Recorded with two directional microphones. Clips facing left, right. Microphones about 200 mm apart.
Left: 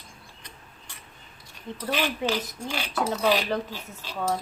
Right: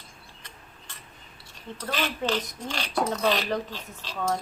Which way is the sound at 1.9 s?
10° left (ahead or behind).